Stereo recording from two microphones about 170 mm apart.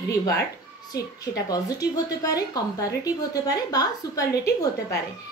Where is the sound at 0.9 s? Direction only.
20° left (ahead or behind).